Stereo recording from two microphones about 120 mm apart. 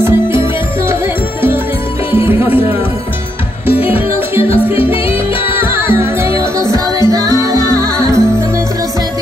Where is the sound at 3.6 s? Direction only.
15° right (ahead or behind).